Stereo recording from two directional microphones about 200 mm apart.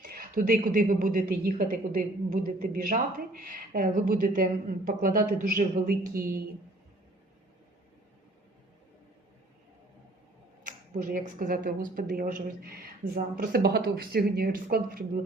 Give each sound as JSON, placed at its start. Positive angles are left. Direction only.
{"t": 0.0, "sound": "speech", "side_deg": -45}
{"t": 10.7, "sound": "speech", "side_deg": -40}